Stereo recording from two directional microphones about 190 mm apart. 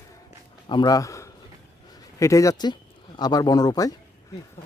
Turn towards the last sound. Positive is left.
turn(degrees=20)  # may be behind; listen again after turning